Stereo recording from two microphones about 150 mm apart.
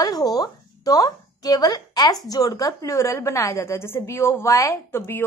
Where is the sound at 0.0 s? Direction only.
25° left (ahead or behind).